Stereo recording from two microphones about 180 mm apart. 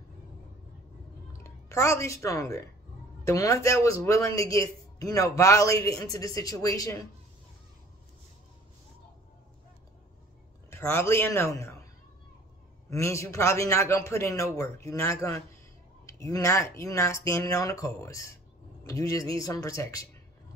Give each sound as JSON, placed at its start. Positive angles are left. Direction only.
{"t": 1.4, "sound": "a woman's voice", "side_deg": 15}
{"t": 10.7, "sound": "speech", "side_deg": 15}
{"t": 12.9, "sound": "a man's voice", "side_deg": 15}